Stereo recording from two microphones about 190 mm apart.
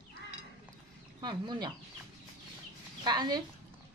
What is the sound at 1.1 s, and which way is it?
Speech, 25° right (ahead or behind).